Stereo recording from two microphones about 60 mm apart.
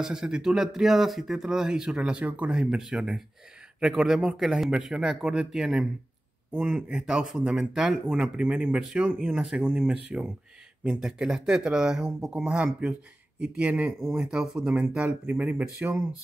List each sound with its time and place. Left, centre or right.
0.0 s speech: centre
13.4 s speech: right
14.2 s speech: centre